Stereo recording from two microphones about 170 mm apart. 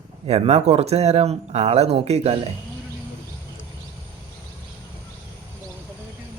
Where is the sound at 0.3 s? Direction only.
35° right (ahead or behind).